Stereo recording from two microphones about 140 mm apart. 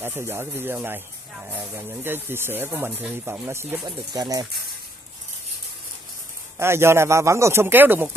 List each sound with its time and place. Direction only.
0.0 s speech: 15° right (ahead or behind)
3.8 s speech: 30° right (ahead or behind)
6.6 s speech: 20° right (ahead or behind)